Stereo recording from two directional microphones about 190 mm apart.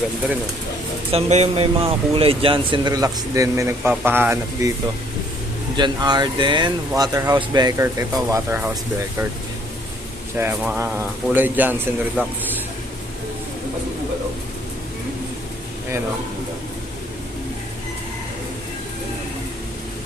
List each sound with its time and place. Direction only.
1.1 s speech: 35° right (ahead or behind); by 4.7 s 10° right (ahead or behind)
5.7 s speech: 25° right (ahead or behind)
10.3 s speech: 10° right (ahead or behind)